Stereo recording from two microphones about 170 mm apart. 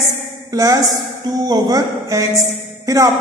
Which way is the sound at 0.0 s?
20° right (ahead or behind).